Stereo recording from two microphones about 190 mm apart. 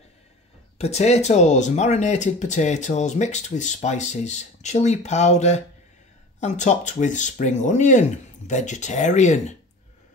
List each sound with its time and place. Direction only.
0.7 s speech: 35° left (ahead or behind)